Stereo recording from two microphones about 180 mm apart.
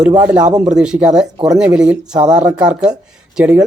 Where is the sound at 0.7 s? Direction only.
5° right (ahead or behind).